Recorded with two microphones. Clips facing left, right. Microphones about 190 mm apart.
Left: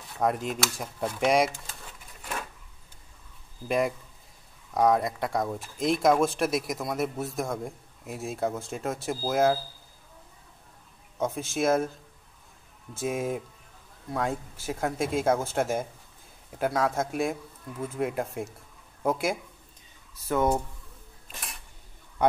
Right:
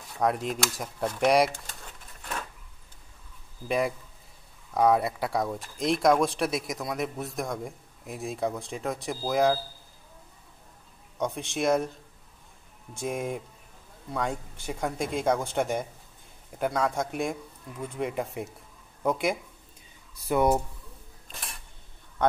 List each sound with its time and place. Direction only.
0.2 s speech: centre (ahead or behind)
3.6 s speech: centre (ahead or behind)
11.1 s speech: centre (ahead or behind)
12.9 s speech: 5° left (ahead or behind)
20.2 s speech: 10° right (ahead or behind)
21.3 s camera: centre (ahead or behind)